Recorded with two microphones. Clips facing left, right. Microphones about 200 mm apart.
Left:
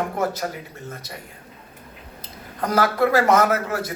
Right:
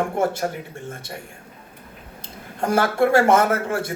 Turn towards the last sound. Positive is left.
turn(degrees=-30)  # may be behind; listen again after turning